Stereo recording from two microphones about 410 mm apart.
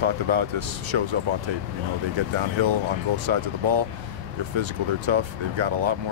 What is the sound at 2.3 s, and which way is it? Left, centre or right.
Speech, right.